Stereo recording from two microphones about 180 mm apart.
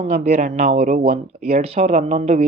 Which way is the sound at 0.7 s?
55° right (ahead or behind).